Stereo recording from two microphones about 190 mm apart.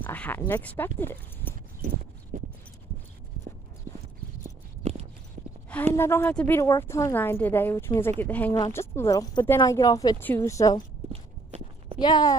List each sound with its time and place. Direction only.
0.0 s speech: 10° left (ahead or behind)
2.3 s a sound: 45° right (ahead or behind)
5.9 s speech: 10° left (ahead or behind)
11.1 s clip-clop: 30° right (ahead or behind)
12.0 s speech: 20° left (ahead or behind)